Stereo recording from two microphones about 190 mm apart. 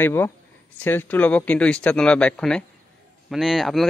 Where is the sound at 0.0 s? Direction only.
10° left (ahead or behind).